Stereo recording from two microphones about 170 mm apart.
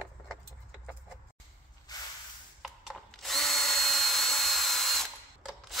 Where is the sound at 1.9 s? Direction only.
20° left (ahead or behind).